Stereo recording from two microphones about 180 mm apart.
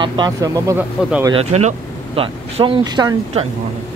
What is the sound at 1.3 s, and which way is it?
Speech, 35° right (ahead or behind).